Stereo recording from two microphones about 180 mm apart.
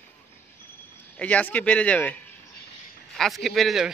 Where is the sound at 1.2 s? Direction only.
10° left (ahead or behind).